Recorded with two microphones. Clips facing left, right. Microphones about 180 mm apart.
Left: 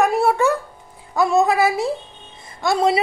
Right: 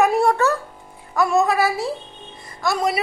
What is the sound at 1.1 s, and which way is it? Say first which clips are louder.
Speech: left 1 dB; 25° left (ahead or behind).